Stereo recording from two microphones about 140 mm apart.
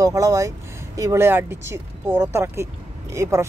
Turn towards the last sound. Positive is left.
turn(degrees=-20)  # may be behind; listen again after turning